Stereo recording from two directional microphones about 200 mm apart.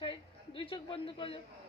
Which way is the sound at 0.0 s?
25° left (ahead or behind).